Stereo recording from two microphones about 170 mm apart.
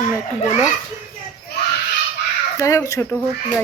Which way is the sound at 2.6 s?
20° left (ahead or behind).